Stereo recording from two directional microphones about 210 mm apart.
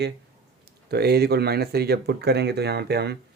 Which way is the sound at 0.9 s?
50° right (ahead or behind).